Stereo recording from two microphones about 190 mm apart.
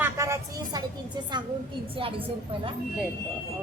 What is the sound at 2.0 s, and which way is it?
Speech, 30° right (ahead or behind).